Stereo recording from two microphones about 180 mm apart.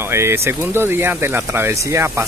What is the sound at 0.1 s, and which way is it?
Speech, 15° right (ahead or behind).